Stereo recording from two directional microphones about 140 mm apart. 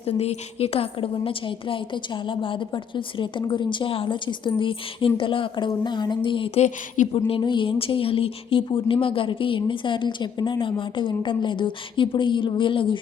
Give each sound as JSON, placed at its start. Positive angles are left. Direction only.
{"t": 0.0, "sound": "a woman's voice", "side_deg": 50}
{"t": 6.7, "sound": "speech", "side_deg": 65}
{"t": 7.1, "sound": "a woman's voice", "side_deg": 40}